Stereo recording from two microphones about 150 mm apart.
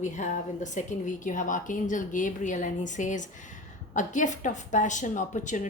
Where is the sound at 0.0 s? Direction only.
55° left (ahead or behind).